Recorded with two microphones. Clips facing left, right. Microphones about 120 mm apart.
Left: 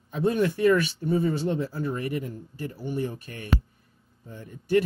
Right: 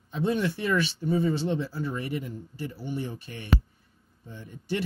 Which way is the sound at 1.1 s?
25° right (ahead or behind).